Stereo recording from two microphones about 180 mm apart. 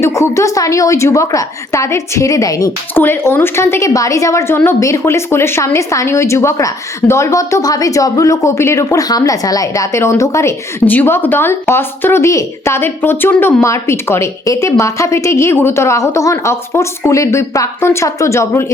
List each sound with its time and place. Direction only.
0.0 s speech: 15° left (ahead or behind)